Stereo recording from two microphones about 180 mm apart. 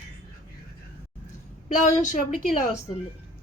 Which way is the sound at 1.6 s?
45° left (ahead or behind).